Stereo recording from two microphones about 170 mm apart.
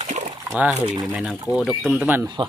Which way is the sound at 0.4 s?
10° right (ahead or behind).